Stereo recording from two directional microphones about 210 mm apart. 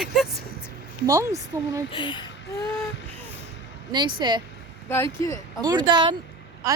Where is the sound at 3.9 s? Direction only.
20° right (ahead or behind).